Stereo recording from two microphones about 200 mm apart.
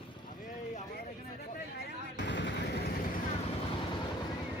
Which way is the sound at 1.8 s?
55° left (ahead or behind).